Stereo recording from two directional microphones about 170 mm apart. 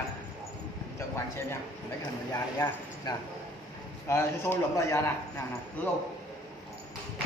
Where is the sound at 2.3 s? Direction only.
20° left (ahead or behind).